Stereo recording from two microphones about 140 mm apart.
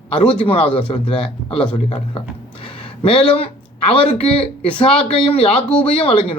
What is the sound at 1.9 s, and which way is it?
Speech, 40° left (ahead or behind).